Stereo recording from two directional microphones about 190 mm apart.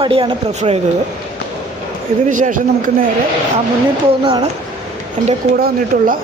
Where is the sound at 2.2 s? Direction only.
45° right (ahead or behind).